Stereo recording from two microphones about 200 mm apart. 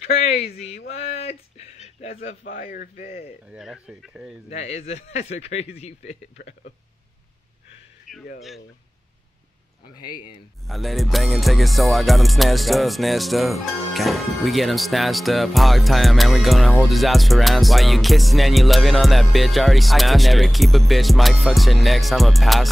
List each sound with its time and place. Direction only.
0.0 s speech: 30° left (ahead or behind)
2.4 s speech: 45° left (ahead or behind)
3.4 s music: 5° right (ahead or behind)
4.5 s speech: 30° left (ahead or behind)
8.1 s a sound: centre (ahead or behind)
9.9 s speech: 20° left (ahead or behind)
10.7 s music: centre (ahead or behind)